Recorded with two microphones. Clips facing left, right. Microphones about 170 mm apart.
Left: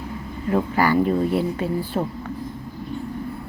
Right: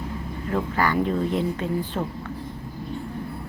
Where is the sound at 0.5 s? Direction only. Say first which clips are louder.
Left 4 dB; 10° left (ahead or behind).